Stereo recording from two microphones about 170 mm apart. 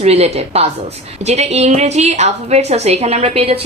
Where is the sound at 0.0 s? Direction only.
40° right (ahead or behind).